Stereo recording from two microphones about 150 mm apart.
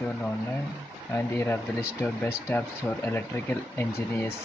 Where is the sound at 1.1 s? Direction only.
15° left (ahead or behind).